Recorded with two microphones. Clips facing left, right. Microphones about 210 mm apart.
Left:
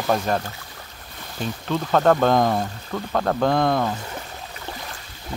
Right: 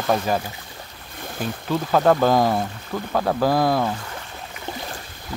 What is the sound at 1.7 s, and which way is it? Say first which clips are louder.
Speech: even; 5° right (ahead or behind).